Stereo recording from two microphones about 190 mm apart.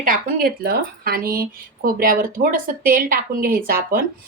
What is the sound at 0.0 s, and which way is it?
Speech, 45° right (ahead or behind).